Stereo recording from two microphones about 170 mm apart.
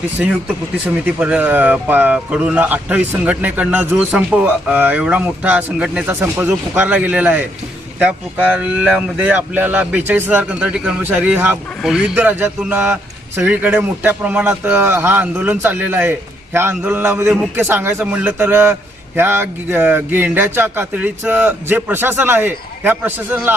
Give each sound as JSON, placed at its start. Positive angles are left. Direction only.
{"t": 0.2, "sound": "speech", "side_deg": -5}
{"t": 8.5, "sound": "speech", "side_deg": -5}